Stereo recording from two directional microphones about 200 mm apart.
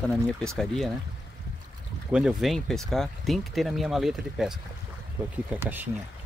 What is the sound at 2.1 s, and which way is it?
Speech, centre (ahead or behind).